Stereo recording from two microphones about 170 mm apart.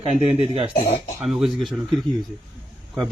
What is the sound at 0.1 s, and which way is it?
Speech, 35° right (ahead or behind).